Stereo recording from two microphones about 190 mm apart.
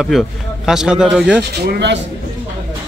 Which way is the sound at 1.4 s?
60° right (ahead or behind).